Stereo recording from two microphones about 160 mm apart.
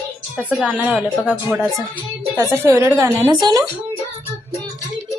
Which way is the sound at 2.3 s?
15° right (ahead or behind).